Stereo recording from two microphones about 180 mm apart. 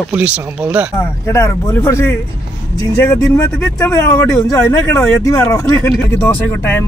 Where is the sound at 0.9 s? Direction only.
15° left (ahead or behind).